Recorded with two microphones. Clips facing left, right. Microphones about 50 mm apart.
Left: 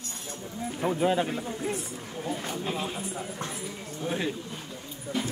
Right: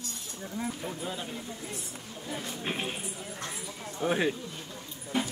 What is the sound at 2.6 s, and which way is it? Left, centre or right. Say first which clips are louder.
Speech: right 1 dB; right.